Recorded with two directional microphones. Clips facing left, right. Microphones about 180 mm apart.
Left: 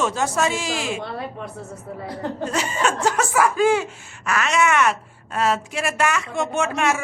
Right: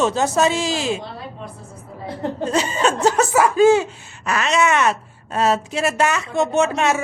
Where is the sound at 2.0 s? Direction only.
30° right (ahead or behind).